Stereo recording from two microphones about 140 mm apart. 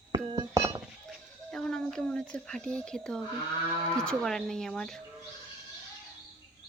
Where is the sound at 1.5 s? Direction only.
5° left (ahead or behind).